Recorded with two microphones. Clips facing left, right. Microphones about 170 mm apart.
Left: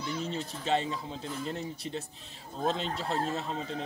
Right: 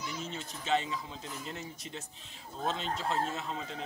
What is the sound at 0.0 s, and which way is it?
Speech, 35° left (ahead or behind).